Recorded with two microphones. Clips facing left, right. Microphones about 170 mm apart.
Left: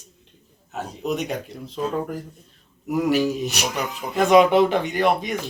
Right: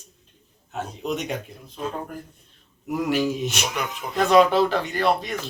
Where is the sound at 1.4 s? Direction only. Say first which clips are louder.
Left 4 dB; 85° left.